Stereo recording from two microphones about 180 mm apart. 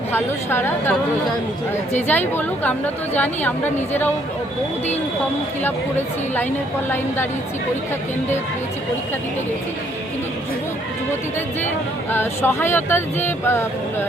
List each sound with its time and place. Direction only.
0.1 s a woman's voice: 10° left (ahead or behind)
2.0 s a woman's voice: 10° left (ahead or behind)
12.1 s a woman's voice: 15° left (ahead or behind)